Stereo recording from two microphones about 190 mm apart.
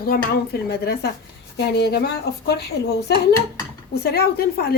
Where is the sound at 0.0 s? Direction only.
55° left (ahead or behind).